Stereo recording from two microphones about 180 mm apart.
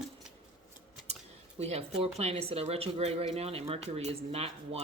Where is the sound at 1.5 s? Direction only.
35° right (ahead or behind).